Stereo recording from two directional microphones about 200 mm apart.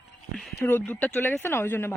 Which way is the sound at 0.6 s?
10° left (ahead or behind).